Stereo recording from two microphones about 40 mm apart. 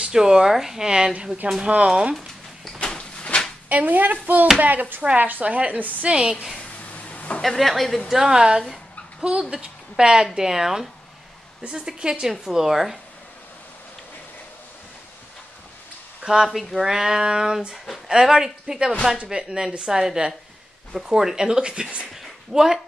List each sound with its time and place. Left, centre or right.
0.0 s speech: centre
2.1 s a sound: centre
2.8 s a sound: left
3.6 s a woman's voice: right
6.0 s speech: right
6.6 s a sound: left
7.4 s speech: centre
8.1 s speech: centre
11.7 s speech: centre
12.3 s speech: centre
16.4 s speech: centre
16.8 s speech: centre
22.1 s a sound: centre